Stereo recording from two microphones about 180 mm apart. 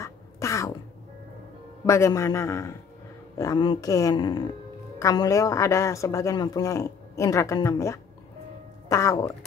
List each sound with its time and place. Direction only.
0.0 s cat: 15° left (ahead or behind)
1.9 s speech: 15° left (ahead or behind)